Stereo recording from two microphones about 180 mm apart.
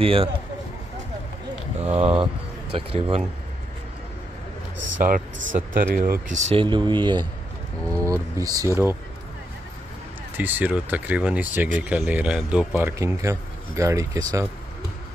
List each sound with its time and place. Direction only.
0.0 s speech: 30° right (ahead or behind)
2.0 s speech: 30° right (ahead or behind)
5.0 s speech: 50° right (ahead or behind)
6.3 s speech: 40° right (ahead or behind)
6.6 s speech: 25° right (ahead or behind)
10.3 s a man's voice: 10° right (ahead or behind)
13.0 s speech: 15° right (ahead or behind)